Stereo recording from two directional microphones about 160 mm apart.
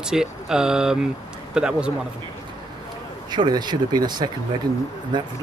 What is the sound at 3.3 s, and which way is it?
Speech, 25° right (ahead or behind).